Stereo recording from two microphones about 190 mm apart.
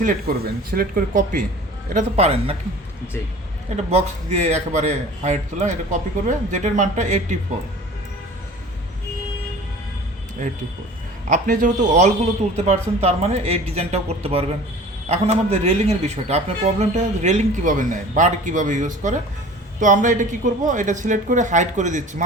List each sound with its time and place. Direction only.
0.0 s a man's voice: 50° right (ahead or behind); by 2.6 s 35° right (ahead or behind)
3.8 s a man's voice: 35° right (ahead or behind)
11.3 s a man's voice: 40° right (ahead or behind)